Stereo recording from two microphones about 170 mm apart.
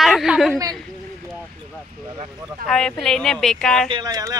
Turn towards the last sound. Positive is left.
turn(degrees=-20)  # may be behind; listen again after turning